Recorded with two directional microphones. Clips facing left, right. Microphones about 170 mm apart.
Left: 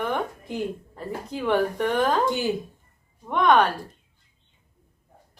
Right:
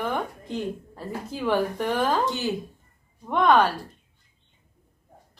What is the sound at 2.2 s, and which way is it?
Speech, 15° left (ahead or behind).